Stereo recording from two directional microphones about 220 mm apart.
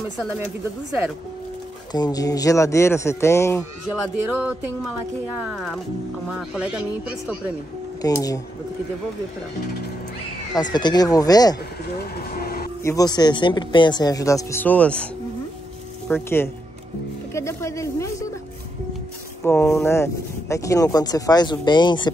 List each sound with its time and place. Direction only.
1.9 s speech: 20° left (ahead or behind)
5.4 s speech: centre (ahead or behind)
8.0 s speech: 15° left (ahead or behind)
10.5 s speech: 20° left (ahead or behind)
12.0 s speech: 45° left (ahead or behind)
12.8 s speech: 15° left (ahead or behind)
16.1 s speech: 10° left (ahead or behind)
19.4 s speech: 10° left (ahead or behind)